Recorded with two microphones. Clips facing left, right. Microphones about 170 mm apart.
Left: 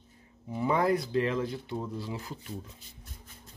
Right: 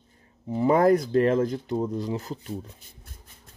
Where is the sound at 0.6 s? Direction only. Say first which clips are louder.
Right 7 dB; 45° right (ahead or behind).